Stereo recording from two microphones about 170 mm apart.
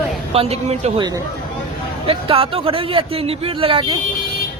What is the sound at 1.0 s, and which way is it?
Speech, 20° right (ahead or behind).